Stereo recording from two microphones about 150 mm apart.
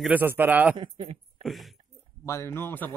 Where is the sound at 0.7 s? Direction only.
40° right (ahead or behind).